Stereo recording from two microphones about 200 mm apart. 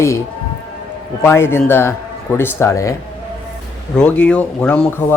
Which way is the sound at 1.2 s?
10° left (ahead or behind).